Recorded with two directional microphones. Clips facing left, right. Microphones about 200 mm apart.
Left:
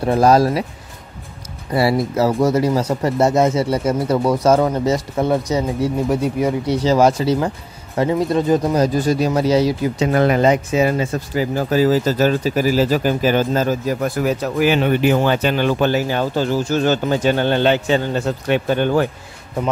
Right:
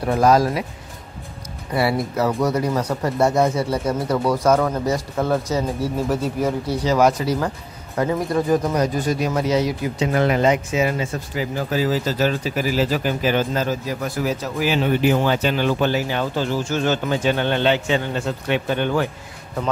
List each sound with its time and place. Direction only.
0.0 s speech: 30° left (ahead or behind)
1.8 s speech: 30° left (ahead or behind); by 6.8 s 15° left (ahead or behind)
6.8 s speech: 30° left (ahead or behind)
10.1 s speech: 45° left (ahead or behind)